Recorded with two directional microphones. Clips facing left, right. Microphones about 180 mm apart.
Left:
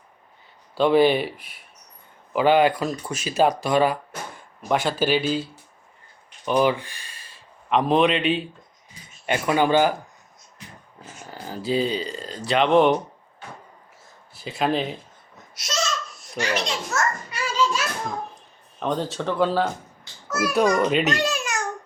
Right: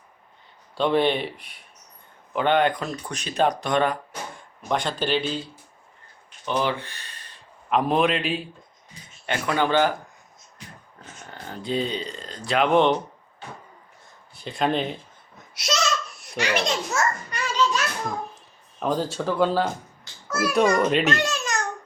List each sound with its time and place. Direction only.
0.8 s speech: 5° left (ahead or behind)
6.4 s a sound: 10° left (ahead or behind)
7.7 s speech: centre (ahead or behind)
9.2 s speech: 15° left (ahead or behind)
11.0 s speech: 5° left (ahead or behind)
14.3 s speech: 5° left (ahead or behind)
15.5 s babbling: 70° right (ahead or behind)
16.9 s children playing: 15° right (ahead or behind)
17.3 s children playing: 5° left (ahead or behind)
18.8 s speech: centre (ahead or behind)
21.2 s babbling: 10° left (ahead or behind)